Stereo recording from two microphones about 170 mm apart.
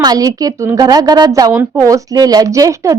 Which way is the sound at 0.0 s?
20° right (ahead or behind).